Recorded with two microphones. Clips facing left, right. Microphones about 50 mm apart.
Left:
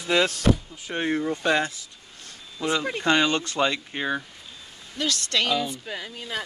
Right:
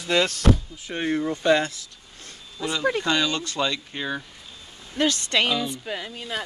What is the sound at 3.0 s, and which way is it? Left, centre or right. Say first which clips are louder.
Speech: left 2 dB; left.